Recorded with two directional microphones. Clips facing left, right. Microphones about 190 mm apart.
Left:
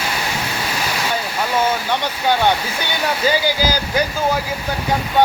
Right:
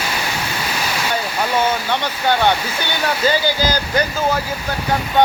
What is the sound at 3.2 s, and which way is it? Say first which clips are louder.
Speech: even; 10° left (ahead or behind).